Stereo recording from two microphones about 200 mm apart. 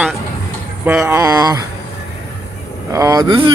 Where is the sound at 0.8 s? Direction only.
10° right (ahead or behind).